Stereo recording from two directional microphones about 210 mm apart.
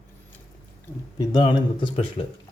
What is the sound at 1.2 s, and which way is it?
Speech, 20° left (ahead or behind).